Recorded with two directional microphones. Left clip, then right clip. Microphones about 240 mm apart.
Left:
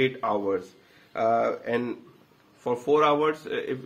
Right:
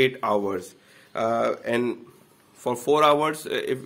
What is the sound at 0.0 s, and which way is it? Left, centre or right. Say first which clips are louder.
Speech: right 3 dB; right.